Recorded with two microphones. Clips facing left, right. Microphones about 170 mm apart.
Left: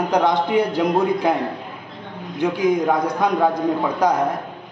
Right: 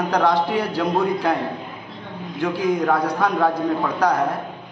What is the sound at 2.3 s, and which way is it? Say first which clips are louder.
A man's voice: left 2 dB; 20° left (ahead or behind).